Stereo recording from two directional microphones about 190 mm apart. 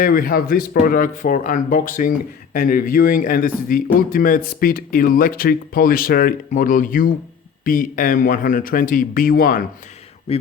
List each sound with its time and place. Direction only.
0.0 s speech: 50° left (ahead or behind)
10.3 s speech: 35° left (ahead or behind)